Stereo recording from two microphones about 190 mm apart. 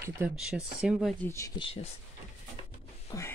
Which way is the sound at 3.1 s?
20° left (ahead or behind).